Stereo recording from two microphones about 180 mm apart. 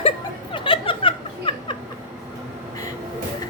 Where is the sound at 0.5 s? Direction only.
30° left (ahead or behind).